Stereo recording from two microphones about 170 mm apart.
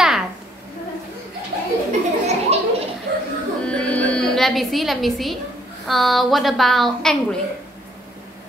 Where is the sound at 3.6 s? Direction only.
5° left (ahead or behind).